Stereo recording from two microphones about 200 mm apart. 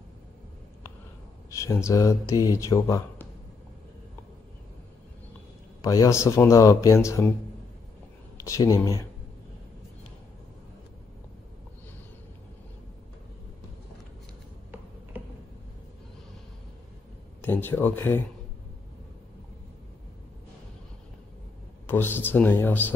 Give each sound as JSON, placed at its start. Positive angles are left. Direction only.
{"t": 1.5, "sound": "speech", "side_deg": 15}
{"t": 5.8, "sound": "speech", "side_deg": 15}
{"t": 8.5, "sound": "speech", "side_deg": 15}
{"t": 17.4, "sound": "speech", "side_deg": 10}
{"t": 21.8, "sound": "speech", "side_deg": 10}